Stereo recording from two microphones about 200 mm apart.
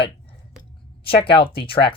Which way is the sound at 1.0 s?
25° left (ahead or behind).